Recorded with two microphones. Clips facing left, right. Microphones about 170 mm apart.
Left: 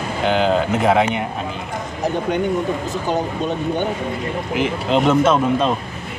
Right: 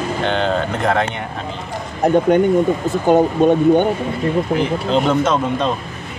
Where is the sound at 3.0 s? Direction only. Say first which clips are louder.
Right 10 dB; 55° right (ahead or behind).